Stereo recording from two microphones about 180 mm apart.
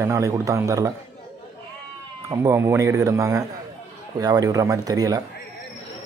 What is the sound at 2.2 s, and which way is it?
Speech, 15° right (ahead or behind).